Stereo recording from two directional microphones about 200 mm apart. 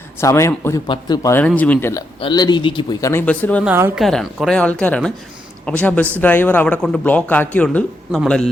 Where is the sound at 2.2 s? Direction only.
20° left (ahead or behind).